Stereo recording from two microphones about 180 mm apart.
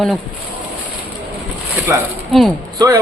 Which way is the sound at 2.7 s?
20° right (ahead or behind).